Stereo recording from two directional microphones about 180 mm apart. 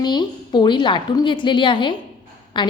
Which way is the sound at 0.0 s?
25° left (ahead or behind).